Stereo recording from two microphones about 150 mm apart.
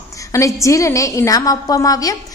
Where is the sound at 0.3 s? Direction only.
20° left (ahead or behind).